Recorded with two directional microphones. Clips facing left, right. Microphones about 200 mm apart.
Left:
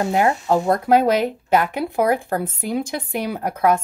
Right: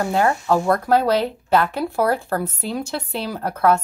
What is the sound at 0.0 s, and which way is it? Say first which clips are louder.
Speech: left 1 dB; 15° left (ahead or behind).